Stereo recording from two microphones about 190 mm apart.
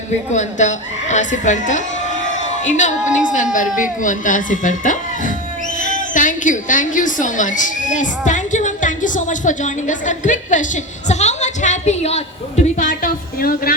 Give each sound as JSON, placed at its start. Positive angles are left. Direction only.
{"t": 0.3, "sound": "a woman's voice", "side_deg": 40}
{"t": 11.1, "sound": "a sound", "side_deg": 35}
{"t": 12.6, "sound": "speech", "side_deg": 45}